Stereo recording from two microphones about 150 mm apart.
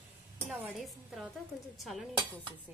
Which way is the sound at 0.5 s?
5° right (ahead or behind).